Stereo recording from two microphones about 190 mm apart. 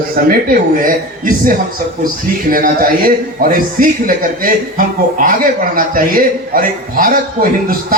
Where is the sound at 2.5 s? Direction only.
50° right (ahead or behind).